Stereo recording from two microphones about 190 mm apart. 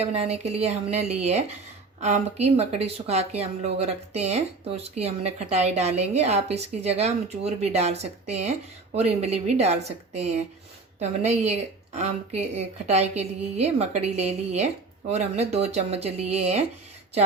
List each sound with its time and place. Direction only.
0.0 s speech: 30° right (ahead or behind)